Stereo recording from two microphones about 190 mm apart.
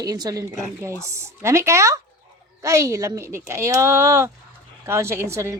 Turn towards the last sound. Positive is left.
turn(degrees=-15)  # may be behind; listen again after turning